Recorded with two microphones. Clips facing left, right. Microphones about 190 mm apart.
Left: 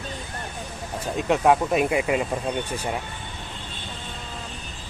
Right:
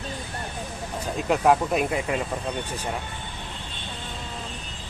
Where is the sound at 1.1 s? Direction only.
Centre (ahead or behind).